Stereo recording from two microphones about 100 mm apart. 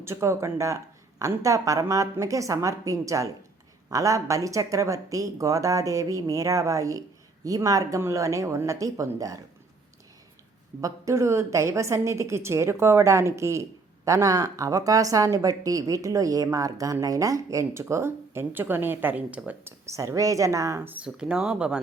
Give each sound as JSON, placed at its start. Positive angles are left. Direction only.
{"t": 0.0, "sound": "a woman's voice", "side_deg": -30}
{"t": 10.8, "sound": "a woman's voice", "side_deg": -35}
{"t": 19.8, "sound": "a woman's voice", "side_deg": -30}
{"t": 20.8, "sound": "speech", "side_deg": -15}